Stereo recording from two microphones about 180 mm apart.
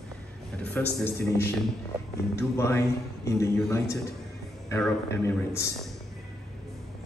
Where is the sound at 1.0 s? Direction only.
15° left (ahead or behind).